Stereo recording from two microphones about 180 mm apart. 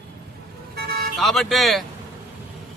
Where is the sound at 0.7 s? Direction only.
65° right (ahead or behind).